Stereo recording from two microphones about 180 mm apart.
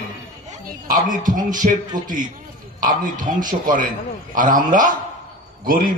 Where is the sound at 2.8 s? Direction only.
50° right (ahead or behind).